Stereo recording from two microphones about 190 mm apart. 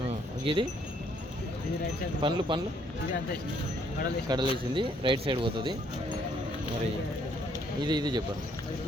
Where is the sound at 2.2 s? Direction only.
25° right (ahead or behind).